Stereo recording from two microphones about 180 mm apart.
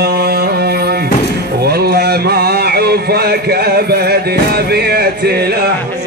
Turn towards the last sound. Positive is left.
turn(degrees=-60)  # may be behind; listen again after turning